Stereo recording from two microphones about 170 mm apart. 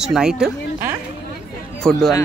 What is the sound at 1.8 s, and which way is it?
Speech, 5° left (ahead or behind).